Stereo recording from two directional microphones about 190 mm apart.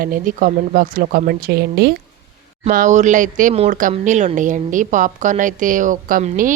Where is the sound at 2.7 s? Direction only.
40° right (ahead or behind).